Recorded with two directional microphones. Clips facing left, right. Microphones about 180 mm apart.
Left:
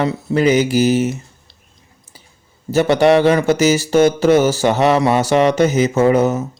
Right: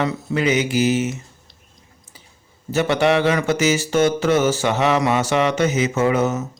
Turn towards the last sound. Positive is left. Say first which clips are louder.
# left 5 dB
turn(degrees=35)  # may be behind; listen again after turning